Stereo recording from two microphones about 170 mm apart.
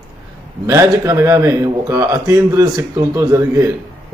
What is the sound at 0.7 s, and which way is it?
Speech, 15° right (ahead or behind).